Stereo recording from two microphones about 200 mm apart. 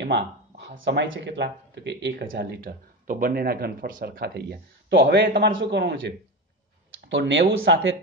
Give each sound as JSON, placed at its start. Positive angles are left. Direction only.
{"t": 0.0, "sound": "speech", "side_deg": -60}